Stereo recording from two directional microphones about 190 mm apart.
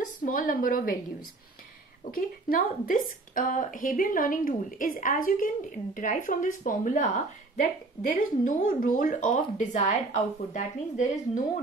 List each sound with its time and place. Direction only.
0.2 s a woman's voice: 45° left (ahead or behind)
2.0 s a woman's voice: 50° left (ahead or behind)